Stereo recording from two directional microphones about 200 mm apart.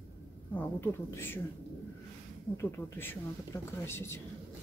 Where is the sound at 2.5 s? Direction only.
10° left (ahead or behind).